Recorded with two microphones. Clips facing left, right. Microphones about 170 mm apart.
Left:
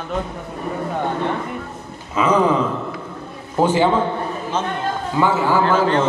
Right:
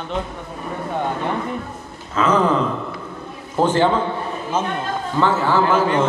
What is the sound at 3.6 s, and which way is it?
Speech, 10° left (ahead or behind).